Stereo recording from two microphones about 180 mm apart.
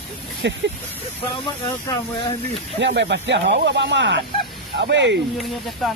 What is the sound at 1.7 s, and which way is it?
Speech, 25° left (ahead or behind).